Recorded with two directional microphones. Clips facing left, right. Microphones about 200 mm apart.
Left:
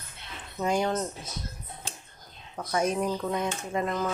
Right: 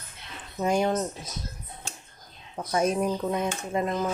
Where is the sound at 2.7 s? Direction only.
25° right (ahead or behind).